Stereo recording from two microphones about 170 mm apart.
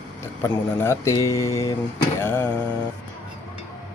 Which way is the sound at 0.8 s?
15° left (ahead or behind).